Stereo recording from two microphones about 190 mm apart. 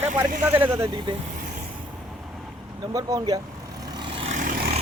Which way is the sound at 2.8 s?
20° right (ahead or behind).